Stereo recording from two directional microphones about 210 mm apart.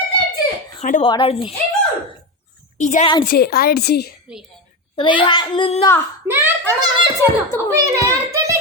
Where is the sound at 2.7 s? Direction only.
35° left (ahead or behind).